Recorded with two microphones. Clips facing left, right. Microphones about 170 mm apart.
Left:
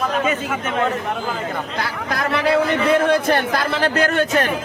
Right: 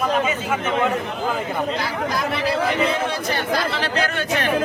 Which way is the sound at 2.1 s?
60° left (ahead or behind).